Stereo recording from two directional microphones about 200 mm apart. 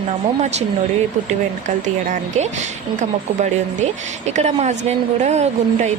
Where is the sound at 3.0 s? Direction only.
35° right (ahead or behind).